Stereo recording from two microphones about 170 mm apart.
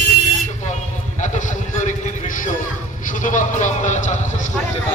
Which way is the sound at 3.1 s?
50° left (ahead or behind).